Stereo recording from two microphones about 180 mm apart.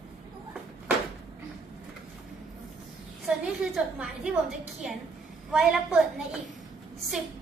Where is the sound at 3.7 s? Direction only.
5° right (ahead or behind).